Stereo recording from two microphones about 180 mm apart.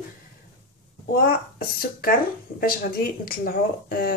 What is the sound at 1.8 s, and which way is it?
Speech, 55° left (ahead or behind).